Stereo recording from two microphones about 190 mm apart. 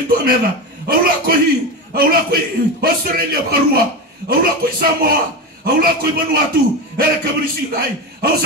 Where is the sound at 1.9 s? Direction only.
50° right (ahead or behind).